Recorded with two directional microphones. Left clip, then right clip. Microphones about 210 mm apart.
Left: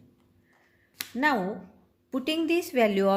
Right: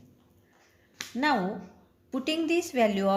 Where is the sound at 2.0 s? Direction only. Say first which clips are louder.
Left 1 dB; 30° left (ahead or behind).